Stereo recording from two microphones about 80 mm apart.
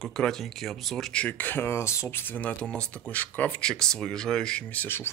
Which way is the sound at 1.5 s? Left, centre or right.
Left.